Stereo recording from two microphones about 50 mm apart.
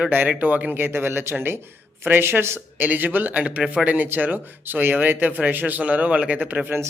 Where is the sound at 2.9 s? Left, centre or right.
Right.